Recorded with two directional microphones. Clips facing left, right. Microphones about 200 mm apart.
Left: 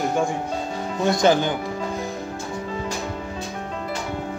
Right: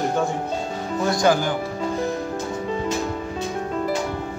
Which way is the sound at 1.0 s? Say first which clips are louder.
Left 1 dB; 20° left (ahead or behind).